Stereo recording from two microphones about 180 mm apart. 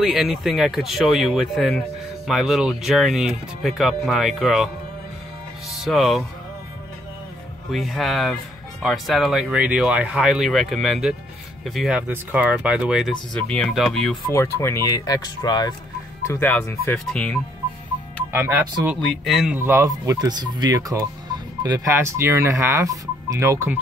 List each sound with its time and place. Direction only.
0.0 s speech: centre (ahead or behind)
5.7 s speech: centre (ahead or behind)
7.7 s speech: centre (ahead or behind)
14.3 s speech: 15° left (ahead or behind)
16.3 s speech: 10° left (ahead or behind)
17.1 s speech: 5° left (ahead or behind)
18.3 s speech: 10° right (ahead or behind)
19.0 s speech: centre (ahead or behind)
19.6 s speech: 15° right (ahead or behind)